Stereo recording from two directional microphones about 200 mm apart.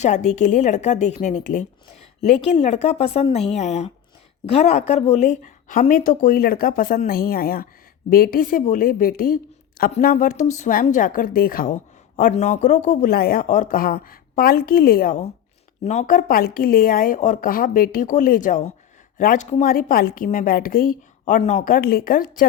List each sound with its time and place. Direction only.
0.0 s a woman's voice: 35° left (ahead or behind)